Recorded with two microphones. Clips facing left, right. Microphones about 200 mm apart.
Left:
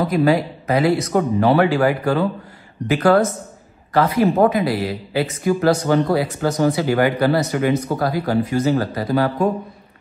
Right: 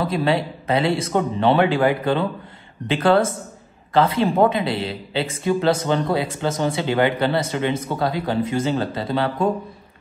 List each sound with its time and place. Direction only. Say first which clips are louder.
0.0 s a man's voice: left 4 dB; 25° right (ahead or behind)